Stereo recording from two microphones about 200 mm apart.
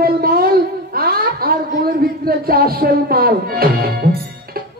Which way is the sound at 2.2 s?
50° right (ahead or behind).